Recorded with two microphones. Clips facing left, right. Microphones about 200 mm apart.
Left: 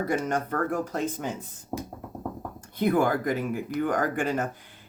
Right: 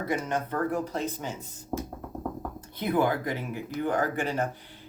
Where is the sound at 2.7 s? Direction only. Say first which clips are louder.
Left 3 dB; 50° left (ahead or behind).